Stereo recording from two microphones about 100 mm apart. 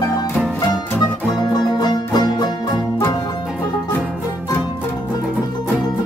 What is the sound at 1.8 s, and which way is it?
Music, 45° left (ahead or behind).